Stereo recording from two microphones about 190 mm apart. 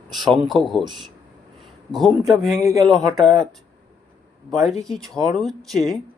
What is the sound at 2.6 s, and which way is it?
Speech, 20° right (ahead or behind).